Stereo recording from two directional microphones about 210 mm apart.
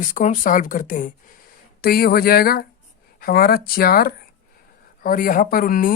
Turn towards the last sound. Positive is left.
turn(degrees=45)  # may be behind; listen again after turning